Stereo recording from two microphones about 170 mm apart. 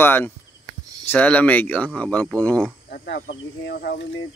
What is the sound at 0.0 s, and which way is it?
Speech, 15° left (ahead or behind).